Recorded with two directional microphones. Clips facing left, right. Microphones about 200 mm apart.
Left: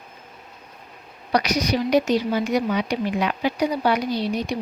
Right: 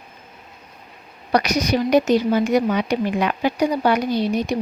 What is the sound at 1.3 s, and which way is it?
A woman's voice, 50° right (ahead or behind).